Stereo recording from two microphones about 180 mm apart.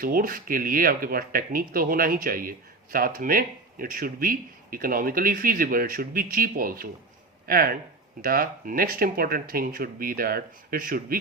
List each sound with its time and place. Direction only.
0.0 s speech: 55° right (ahead or behind)